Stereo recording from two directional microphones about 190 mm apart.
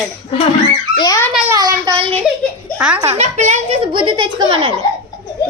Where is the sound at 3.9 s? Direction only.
25° right (ahead or behind).